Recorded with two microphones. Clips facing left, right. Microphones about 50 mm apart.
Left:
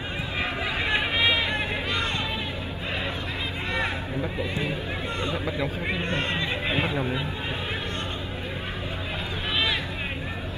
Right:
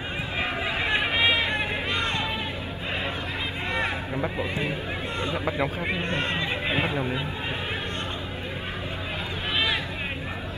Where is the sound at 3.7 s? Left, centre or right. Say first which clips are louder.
Even; right.